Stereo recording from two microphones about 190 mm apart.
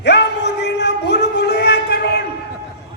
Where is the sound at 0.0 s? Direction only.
60° left (ahead or behind).